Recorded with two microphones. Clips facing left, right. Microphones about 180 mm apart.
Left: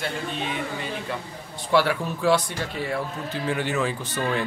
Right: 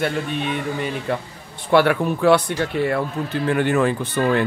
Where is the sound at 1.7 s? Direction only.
60° right (ahead or behind).